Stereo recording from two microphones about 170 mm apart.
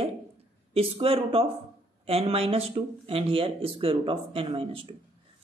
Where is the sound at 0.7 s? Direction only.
35° right (ahead or behind).